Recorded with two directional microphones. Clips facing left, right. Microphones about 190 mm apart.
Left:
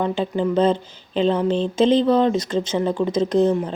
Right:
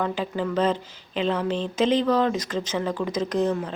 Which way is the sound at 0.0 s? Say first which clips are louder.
Left 5 dB; 25° left (ahead or behind).